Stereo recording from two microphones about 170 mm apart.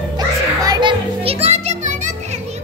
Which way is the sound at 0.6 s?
25° right (ahead or behind).